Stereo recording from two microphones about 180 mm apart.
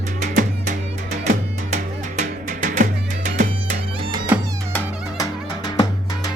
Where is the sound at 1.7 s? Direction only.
45° right (ahead or behind).